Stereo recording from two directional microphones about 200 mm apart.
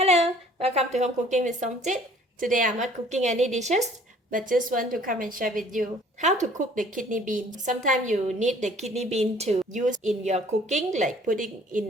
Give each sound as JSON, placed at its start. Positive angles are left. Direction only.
{"t": 0.0, "sound": "a woman's voice", "side_deg": -30}